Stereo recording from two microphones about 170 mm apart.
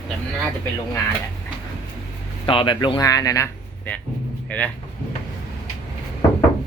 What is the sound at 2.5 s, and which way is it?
Speech, 30° left (ahead or behind).